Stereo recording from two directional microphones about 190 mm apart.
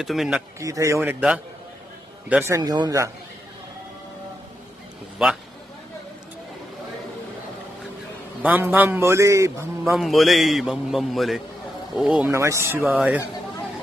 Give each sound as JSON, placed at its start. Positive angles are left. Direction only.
{"t": 0.0, "sound": "a man's voice", "side_deg": 0}
{"t": 0.6, "sound": "a man's voice", "side_deg": -15}
{"t": 5.2, "sound": "a man's voice", "side_deg": -5}
{"t": 8.4, "sound": "a man's voice", "side_deg": -10}
{"t": 9.9, "sound": "a man's voice", "side_deg": 0}
{"t": 12.3, "sound": "a man's voice", "side_deg": -15}